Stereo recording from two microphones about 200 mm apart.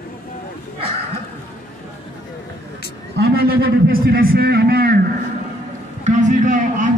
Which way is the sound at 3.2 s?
50° right (ahead or behind).